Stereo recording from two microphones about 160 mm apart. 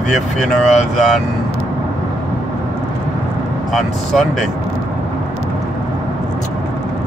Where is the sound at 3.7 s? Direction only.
Centre (ahead or behind).